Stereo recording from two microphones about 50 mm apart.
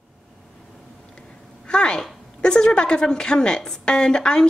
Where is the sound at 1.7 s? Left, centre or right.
Centre.